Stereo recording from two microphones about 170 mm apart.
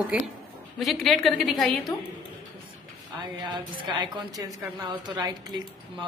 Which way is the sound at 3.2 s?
25° right (ahead or behind).